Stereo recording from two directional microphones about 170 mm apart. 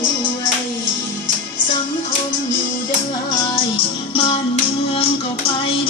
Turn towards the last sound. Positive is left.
turn(degrees=30)  # may be behind; listen again after turning